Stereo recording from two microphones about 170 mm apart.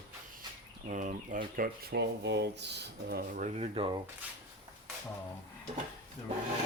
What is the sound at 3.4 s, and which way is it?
Speech, 45° right (ahead or behind).